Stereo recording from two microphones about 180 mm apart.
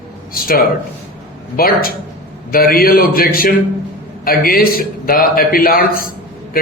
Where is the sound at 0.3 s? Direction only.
55° left (ahead or behind).